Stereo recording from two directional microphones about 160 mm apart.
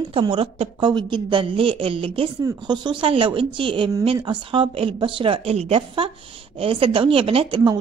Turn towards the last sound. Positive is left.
turn(degrees=-30)  # may be behind; listen again after turning